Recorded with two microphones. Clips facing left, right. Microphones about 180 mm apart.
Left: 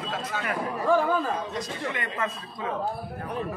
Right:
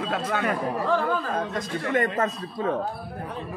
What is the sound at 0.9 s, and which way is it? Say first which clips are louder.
Speech: left 4 dB; 15° left (ahead or behind).